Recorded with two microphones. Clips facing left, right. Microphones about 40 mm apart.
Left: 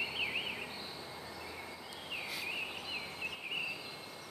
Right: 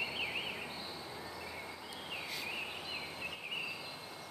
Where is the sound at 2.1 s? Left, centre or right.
Centre.